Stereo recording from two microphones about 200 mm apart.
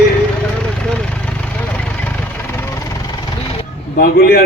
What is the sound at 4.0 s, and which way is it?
Speech, 50° left (ahead or behind).